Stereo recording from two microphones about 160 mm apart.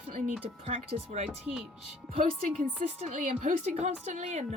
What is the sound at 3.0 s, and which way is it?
Speech, 45° right (ahead or behind).